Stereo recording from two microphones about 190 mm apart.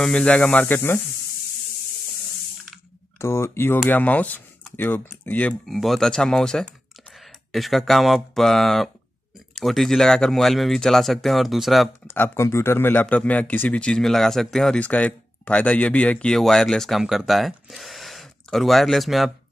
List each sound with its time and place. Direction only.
0.0 s speech: 5° left (ahead or behind)
3.2 s speech: 15° left (ahead or behind)
12.1 s speech: 15° left (ahead or behind)